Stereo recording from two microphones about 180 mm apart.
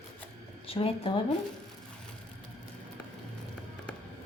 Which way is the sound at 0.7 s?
30° left (ahead or behind).